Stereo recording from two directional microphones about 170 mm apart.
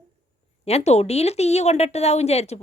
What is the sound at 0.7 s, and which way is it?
Speech, 40° left (ahead or behind).